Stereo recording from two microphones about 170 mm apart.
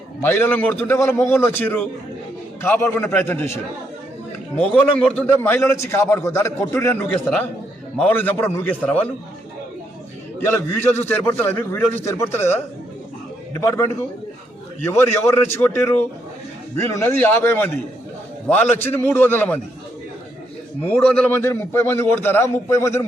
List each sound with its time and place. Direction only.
0.2 s a man's voice: 15° left (ahead or behind)
10.4 s a man's voice: 15° left (ahead or behind)
20.8 s a man's voice: 10° left (ahead or behind)